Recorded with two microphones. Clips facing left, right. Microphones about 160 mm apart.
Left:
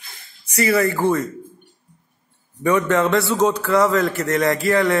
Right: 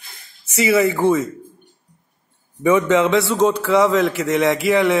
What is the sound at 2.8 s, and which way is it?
Speech, 20° right (ahead or behind).